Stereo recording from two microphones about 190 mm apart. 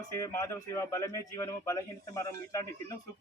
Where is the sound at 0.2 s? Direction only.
15° left (ahead or behind).